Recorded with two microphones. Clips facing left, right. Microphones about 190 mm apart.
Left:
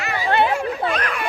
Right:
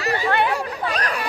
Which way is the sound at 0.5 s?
35° right (ahead or behind).